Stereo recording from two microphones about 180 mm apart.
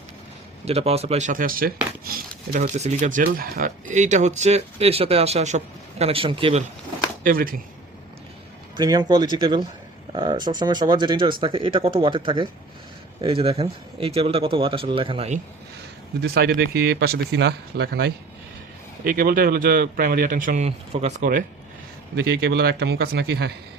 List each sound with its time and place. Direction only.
0.6 s speech: 35° right (ahead or behind)
7.3 s a man's voice: 50° right (ahead or behind)
8.7 s speech: 25° right (ahead or behind)
16.2 s speech: 60° right (ahead or behind)
19.0 s a man's voice: 55° right (ahead or behind); by 21.2 s 35° right (ahead or behind)
22.1 s a man's voice: 70° right (ahead or behind)